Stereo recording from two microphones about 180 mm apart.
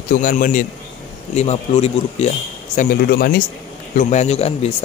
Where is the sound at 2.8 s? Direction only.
55° left (ahead or behind).